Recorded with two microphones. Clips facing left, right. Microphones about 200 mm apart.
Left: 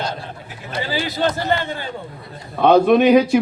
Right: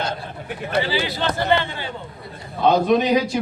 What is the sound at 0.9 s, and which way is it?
Speech, 45° left (ahead or behind).